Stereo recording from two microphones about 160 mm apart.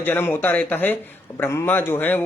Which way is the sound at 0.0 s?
10° left (ahead or behind).